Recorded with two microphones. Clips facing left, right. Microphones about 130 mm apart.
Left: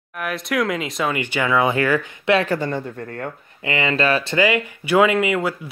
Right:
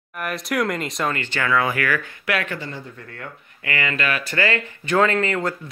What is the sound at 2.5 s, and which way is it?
Speech, 50° left (ahead or behind).